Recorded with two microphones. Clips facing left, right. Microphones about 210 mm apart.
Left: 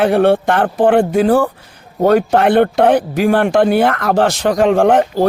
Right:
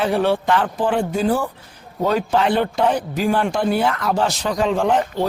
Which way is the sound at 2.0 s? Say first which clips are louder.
Left 7 dB; 55° left (ahead or behind).